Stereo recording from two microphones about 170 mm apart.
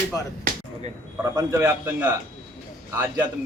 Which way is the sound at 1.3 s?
15° right (ahead or behind).